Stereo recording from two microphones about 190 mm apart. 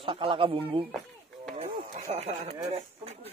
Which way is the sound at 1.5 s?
35° right (ahead or behind).